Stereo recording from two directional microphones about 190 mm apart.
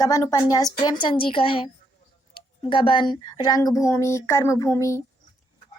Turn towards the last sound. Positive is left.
turn(degrees=15)  # may be behind; listen again after turning